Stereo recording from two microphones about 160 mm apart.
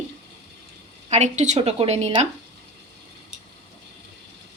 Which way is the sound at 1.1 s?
45° right (ahead or behind).